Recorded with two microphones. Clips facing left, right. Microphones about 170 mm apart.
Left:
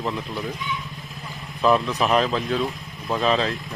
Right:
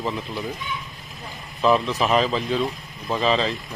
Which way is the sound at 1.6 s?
Centre (ahead or behind).